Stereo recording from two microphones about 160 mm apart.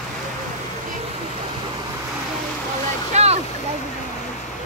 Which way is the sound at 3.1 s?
40° right (ahead or behind).